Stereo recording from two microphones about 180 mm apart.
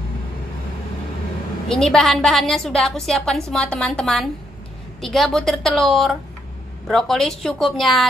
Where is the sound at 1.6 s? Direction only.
5° left (ahead or behind).